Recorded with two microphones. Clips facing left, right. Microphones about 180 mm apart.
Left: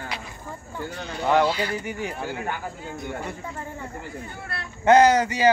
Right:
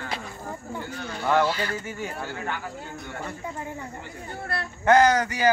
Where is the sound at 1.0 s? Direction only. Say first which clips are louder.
Left 2 dB; 15° left (ahead or behind).